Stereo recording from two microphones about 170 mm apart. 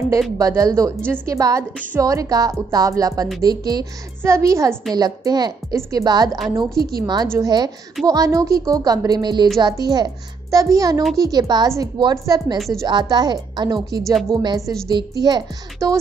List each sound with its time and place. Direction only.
0.4 s a woman's voice: 20° right (ahead or behind)
6.7 s a woman's voice: 65° right (ahead or behind)
7.0 s a woman's voice: 25° right (ahead or behind)
12.5 s speech: centre (ahead or behind)
12.8 s a woman's voice: 25° right (ahead or behind)